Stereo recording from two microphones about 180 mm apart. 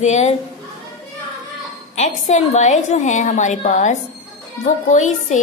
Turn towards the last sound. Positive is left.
turn(degrees=45)  # may be behind; listen again after turning